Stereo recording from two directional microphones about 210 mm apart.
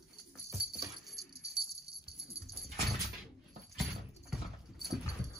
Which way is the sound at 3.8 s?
Centre (ahead or behind).